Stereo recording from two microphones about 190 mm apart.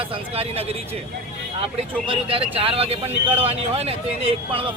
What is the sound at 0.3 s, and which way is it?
Speech, 30° right (ahead or behind).